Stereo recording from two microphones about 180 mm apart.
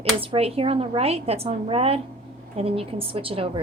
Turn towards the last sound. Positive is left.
turn(degrees=-30)  # may be behind; listen again after turning